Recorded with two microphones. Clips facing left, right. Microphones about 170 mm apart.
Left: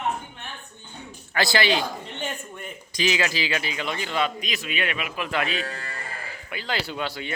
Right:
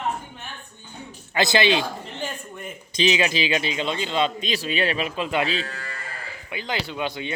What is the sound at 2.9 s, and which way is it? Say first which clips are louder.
Speech: right 3 dB; 20° right (ahead or behind).